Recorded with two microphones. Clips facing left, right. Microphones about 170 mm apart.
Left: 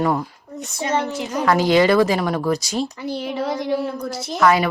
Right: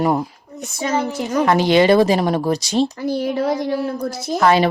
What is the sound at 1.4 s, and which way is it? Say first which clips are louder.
Speech: right 1 dB; 25° right (ahead or behind).